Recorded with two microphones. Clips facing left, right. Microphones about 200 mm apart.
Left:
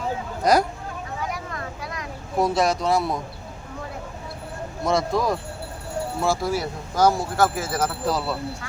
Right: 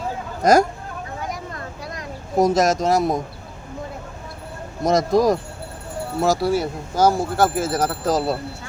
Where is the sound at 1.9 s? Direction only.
45° right (ahead or behind).